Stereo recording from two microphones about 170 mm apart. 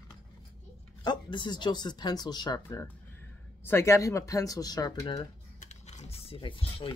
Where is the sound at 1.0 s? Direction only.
25° left (ahead or behind).